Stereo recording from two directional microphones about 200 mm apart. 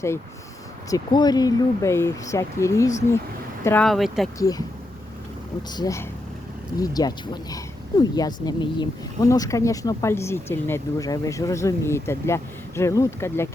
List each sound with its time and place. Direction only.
0.9 s speech: 20° left (ahead or behind)
3.8 s speech: centre (ahead or behind)
4.4 s speech: 20° left (ahead or behind)
5.7 s speech: 15° left (ahead or behind)